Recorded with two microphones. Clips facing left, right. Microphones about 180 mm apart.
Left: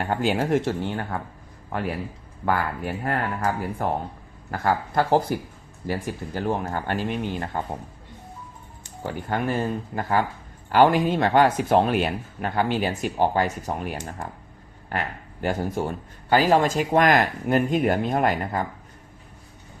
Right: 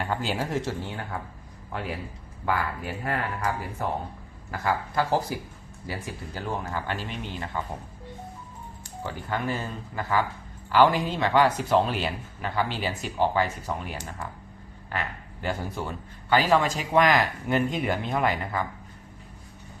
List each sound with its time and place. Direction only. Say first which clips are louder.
0.1 s speech: left 8 dB; 55° left (ahead or behind)
2.5 s a man's voice: left 3 dB; 50° left (ahead or behind)
9.3 s a man's voice: left 5 dB; 50° left (ahead or behind)